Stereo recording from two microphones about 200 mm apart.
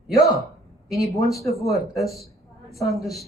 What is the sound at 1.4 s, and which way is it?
Speech, 15° left (ahead or behind).